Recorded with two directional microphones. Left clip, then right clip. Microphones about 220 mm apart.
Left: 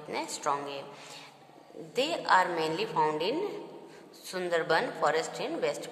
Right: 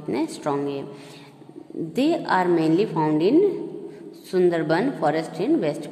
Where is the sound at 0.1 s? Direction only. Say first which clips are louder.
Right 6 dB; 20° right (ahead or behind).